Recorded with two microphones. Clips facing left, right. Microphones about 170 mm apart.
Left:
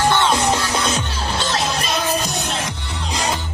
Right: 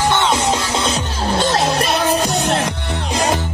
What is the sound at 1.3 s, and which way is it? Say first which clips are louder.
Music: right 6 dB; 55° right (ahead or behind).